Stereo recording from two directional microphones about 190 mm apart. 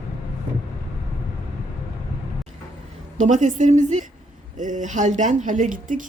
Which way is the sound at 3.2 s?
40° right (ahead or behind).